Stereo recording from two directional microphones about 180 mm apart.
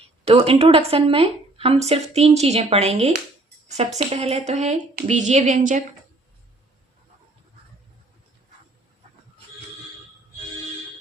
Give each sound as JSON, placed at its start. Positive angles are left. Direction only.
{"t": 0.3, "sound": "a woman's voice", "side_deg": -30}